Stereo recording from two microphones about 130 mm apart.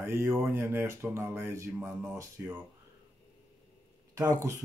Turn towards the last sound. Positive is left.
turn(degrees=-25)  # may be behind; listen again after turning